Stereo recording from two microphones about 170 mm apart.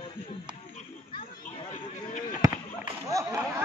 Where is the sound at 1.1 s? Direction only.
50° left (ahead or behind).